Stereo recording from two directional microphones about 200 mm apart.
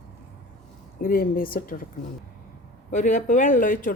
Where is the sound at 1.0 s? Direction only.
45° left (ahead or behind).